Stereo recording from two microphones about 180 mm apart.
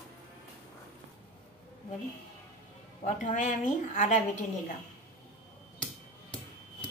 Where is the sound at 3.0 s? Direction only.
45° left (ahead or behind).